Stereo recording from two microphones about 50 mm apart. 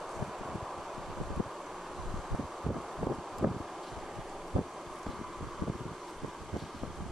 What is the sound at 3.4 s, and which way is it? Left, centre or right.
Rustling leaves, right.